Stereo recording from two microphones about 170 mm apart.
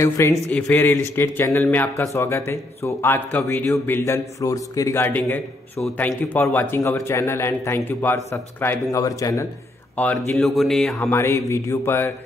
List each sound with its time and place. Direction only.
0.5 s speech: 10° left (ahead or behind)
9.9 s speech: 5° left (ahead or behind)
11.0 s speech: 15° left (ahead or behind)